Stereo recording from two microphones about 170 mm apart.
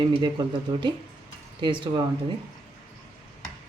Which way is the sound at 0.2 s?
25° right (ahead or behind).